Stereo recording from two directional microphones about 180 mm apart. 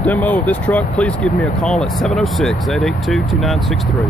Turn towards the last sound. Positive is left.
turn(degrees=0)  # may be behind; listen again after turning